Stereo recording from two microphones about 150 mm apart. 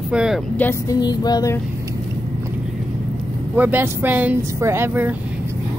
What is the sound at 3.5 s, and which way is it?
Speech, 10° right (ahead or behind).